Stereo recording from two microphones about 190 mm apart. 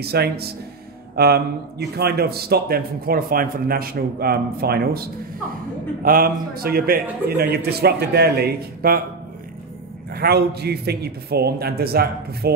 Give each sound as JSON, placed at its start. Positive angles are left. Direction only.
{"t": 0.0, "sound": "a man's voice", "side_deg": -55}
{"t": 10.1, "sound": "a man's voice", "side_deg": -55}